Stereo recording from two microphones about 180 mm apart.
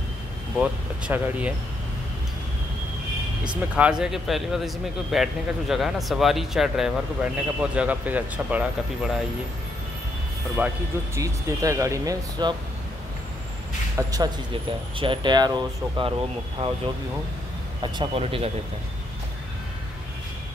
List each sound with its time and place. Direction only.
0.6 s speech: 10° right (ahead or behind)
3.7 s speech: 5° right (ahead or behind)
10.6 s speech: 10° right (ahead or behind)
13.9 s speech: 20° right (ahead or behind)
17.9 s speech: 30° right (ahead or behind)